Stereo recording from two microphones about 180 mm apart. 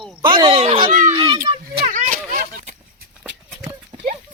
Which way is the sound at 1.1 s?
20° right (ahead or behind).